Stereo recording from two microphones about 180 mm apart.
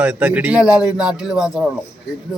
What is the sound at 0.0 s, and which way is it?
A man's voice, 10° right (ahead or behind).